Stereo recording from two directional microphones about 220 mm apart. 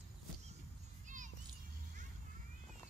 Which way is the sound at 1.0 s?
35° right (ahead or behind).